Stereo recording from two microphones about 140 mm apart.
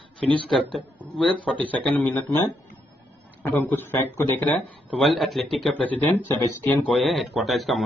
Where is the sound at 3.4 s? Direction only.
15° left (ahead or behind).